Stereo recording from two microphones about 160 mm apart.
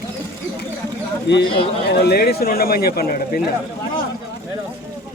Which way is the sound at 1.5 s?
85° left.